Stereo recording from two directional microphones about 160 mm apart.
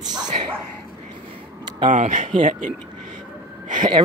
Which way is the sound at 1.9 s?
50° right (ahead or behind).